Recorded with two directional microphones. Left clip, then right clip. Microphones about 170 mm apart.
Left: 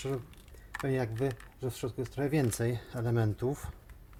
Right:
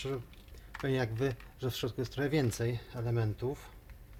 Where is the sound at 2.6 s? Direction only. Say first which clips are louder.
Left 2 dB; 30° left (ahead or behind).